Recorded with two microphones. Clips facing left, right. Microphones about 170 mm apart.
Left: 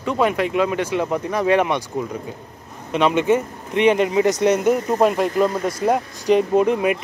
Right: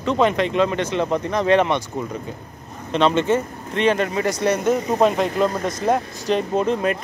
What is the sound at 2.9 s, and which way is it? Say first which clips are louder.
Speech: left 1 dB; 10° left (ahead or behind).